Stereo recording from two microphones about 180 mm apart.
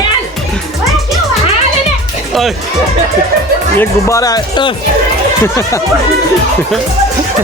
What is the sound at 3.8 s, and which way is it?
Speech, 15° left (ahead or behind).